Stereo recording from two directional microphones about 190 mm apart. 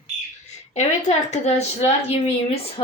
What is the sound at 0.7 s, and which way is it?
Speech, 40° left (ahead or behind).